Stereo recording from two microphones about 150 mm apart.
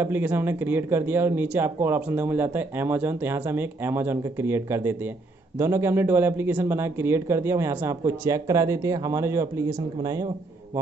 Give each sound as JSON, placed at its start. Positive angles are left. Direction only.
{"t": 0.0, "sound": "speech", "side_deg": -15}